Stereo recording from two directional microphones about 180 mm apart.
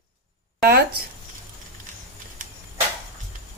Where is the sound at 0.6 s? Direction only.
60° right (ahead or behind).